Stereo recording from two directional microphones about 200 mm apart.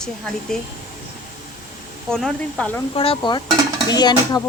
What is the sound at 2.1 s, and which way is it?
Speech, 5° left (ahead or behind).